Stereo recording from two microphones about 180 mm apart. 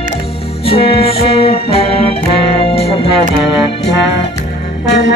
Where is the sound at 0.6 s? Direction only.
30° left (ahead or behind).